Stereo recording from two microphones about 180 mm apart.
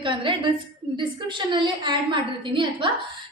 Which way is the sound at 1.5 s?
25° right (ahead or behind).